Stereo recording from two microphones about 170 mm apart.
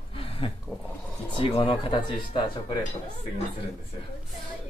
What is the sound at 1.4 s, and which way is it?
Speech, 30° left (ahead or behind).